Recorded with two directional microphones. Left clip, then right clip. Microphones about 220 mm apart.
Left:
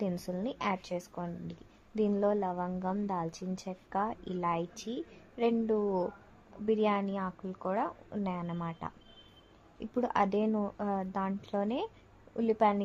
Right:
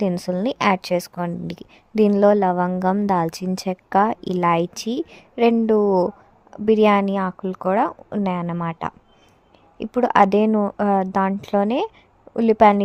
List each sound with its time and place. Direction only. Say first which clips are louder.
0.0 s a woman's voice: right 14 dB; 40° right (ahead or behind)